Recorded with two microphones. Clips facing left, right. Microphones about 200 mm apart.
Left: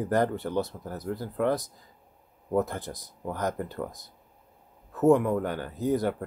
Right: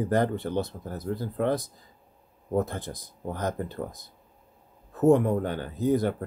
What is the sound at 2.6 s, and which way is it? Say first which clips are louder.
Speech: even; 25° right (ahead or behind).